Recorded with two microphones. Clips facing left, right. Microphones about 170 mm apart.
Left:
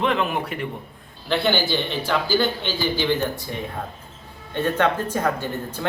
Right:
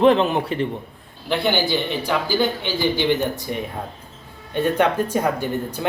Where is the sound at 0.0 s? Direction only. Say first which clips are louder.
Right 7 dB; 30° right (ahead or behind).